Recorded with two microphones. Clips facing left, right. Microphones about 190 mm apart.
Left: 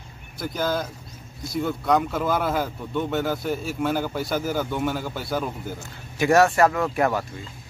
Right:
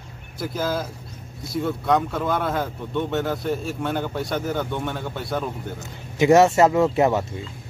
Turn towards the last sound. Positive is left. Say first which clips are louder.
# right 4 dB
turn(degrees=-25)  # may be behind; listen again after turning